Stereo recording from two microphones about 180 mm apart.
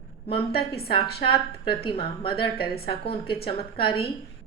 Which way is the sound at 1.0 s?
60° left (ahead or behind).